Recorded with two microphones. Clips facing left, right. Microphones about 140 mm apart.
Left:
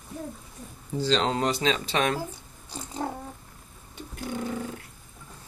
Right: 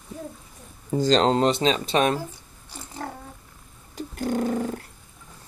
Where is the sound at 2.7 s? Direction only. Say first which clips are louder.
Left 3 dB; 15° left (ahead or behind).